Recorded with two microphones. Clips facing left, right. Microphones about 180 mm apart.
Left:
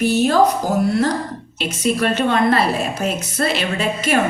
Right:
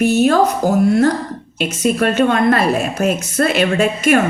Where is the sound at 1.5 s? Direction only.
50° right (ahead or behind).